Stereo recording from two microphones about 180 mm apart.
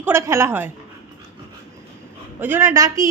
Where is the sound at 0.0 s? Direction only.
15° right (ahead or behind).